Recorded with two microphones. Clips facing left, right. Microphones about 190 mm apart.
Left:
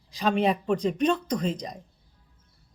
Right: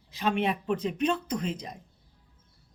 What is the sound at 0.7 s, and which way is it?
Speech, 5° right (ahead or behind).